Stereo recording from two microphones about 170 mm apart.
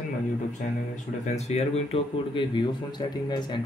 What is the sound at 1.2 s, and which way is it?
Speech, 40° left (ahead or behind).